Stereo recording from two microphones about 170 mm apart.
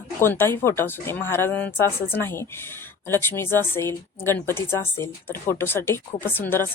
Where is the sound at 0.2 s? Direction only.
15° left (ahead or behind).